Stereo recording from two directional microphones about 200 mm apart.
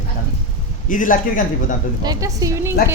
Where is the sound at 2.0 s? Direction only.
20° right (ahead or behind).